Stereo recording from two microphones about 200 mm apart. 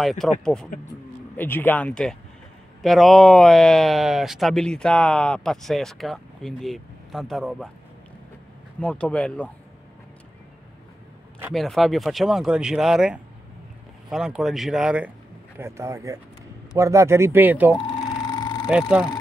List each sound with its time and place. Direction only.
0.0 s speech: centre (ahead or behind)
8.8 s speech: 5° left (ahead or behind)
11.5 s speech: centre (ahead or behind)
18.0 s a sound: 20° left (ahead or behind)
18.7 s speech: 5° right (ahead or behind)